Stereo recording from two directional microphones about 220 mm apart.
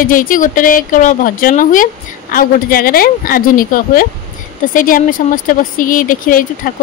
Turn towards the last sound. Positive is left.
turn(degrees=40)  # may be behind; listen again after turning